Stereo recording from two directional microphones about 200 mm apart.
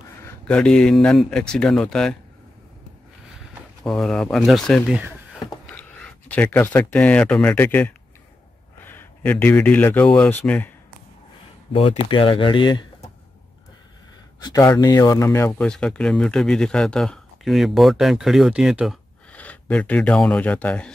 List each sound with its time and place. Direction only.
0.2 s a sound: 15° left (ahead or behind)
0.6 s speech: 5° left (ahead or behind)
3.8 s speech: 5° left (ahead or behind)
4.9 s a sound: 5° right (ahead or behind)
5.7 s speech: 5° left (ahead or behind)
11.7 s speech: 25° left (ahead or behind)
14.4 s speech: 20° left (ahead or behind)